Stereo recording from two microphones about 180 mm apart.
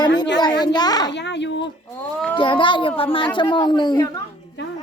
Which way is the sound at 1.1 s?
75° left (ahead or behind).